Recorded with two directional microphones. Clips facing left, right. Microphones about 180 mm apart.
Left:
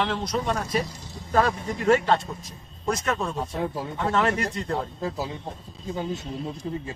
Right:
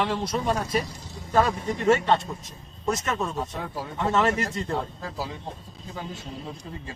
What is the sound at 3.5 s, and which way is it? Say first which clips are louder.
Speech: left 5 dB; 25° left (ahead or behind).